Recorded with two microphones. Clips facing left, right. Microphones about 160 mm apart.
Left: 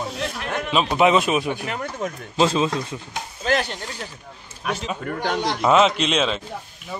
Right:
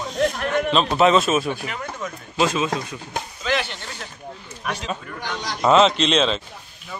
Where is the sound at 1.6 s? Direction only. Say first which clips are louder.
Left 3 dB; 50° left (ahead or behind).